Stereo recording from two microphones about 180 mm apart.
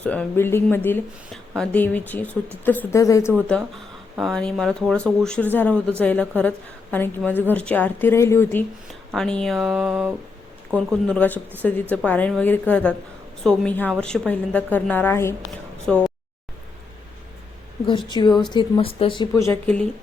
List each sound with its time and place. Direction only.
0.0 s speech: 5° left (ahead or behind)
4.2 s speech: 5° left (ahead or behind)
9.1 s speech: 5° left (ahead or behind)
9.9 s a sound: 5° right (ahead or behind)
11.0 s speech: 5° left (ahead or behind)
17.8 s speech: 25° left (ahead or behind); by 19.8 s 10° left (ahead or behind)